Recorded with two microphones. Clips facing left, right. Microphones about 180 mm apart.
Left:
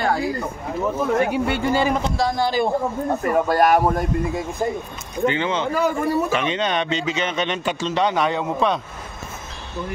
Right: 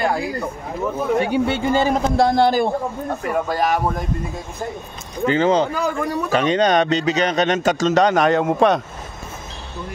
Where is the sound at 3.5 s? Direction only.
50° left (ahead or behind).